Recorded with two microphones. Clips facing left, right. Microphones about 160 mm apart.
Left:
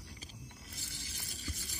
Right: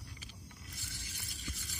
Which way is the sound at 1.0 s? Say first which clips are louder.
Left 2 dB; 35° left (ahead or behind).